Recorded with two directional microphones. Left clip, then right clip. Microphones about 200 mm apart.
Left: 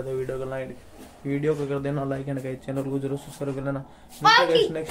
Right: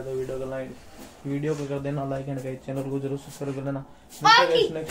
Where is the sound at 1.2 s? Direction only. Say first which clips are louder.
Left 3 dB; 20° left (ahead or behind).